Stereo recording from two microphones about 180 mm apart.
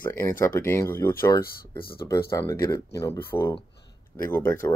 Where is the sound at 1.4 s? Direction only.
55° left (ahead or behind).